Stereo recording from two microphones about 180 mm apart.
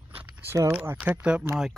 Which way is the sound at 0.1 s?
10° right (ahead or behind).